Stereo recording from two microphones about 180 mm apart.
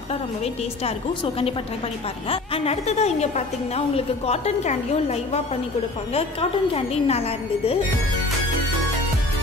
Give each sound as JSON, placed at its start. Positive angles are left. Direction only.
{"t": 0.8, "sound": "a woman's voice", "side_deg": 30}
{"t": 6.7, "sound": "a woman's voice", "side_deg": 35}